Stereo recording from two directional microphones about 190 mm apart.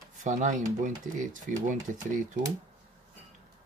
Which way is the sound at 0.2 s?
40° right (ahead or behind).